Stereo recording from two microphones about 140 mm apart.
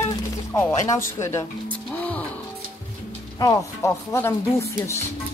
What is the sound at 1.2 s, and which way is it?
Music, 20° left (ahead or behind).